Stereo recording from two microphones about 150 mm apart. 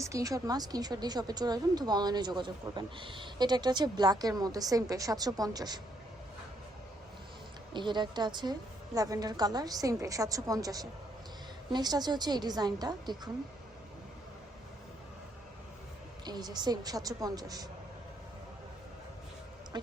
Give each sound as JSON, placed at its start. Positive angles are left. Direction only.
{"t": 0.0, "sound": "a woman's voice", "side_deg": -20}
{"t": 7.7, "sound": "a woman's voice", "side_deg": -30}
{"t": 16.2, "sound": "a woman's voice", "side_deg": -30}
{"t": 19.7, "sound": "a woman's voice", "side_deg": -30}